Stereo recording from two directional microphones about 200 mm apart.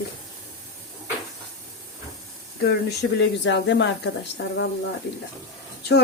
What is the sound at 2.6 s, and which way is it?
Speech, 65° left (ahead or behind).